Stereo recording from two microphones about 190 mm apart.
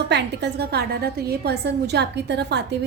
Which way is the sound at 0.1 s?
65° right (ahead or behind).